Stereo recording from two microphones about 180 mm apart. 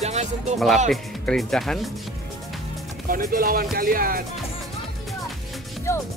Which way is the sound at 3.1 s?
55° right (ahead or behind).